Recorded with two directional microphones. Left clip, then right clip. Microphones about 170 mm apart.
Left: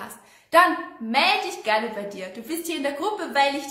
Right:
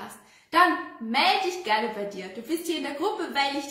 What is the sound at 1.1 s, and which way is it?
A woman's voice, 20° left (ahead or behind).